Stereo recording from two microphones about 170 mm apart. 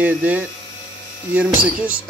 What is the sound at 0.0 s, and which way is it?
A man's voice, 10° right (ahead or behind).